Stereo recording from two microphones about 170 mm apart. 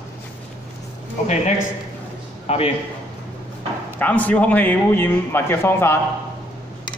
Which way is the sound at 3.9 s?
10° left (ahead or behind).